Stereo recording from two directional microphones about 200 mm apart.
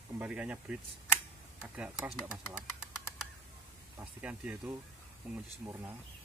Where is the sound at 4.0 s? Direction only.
5° right (ahead or behind).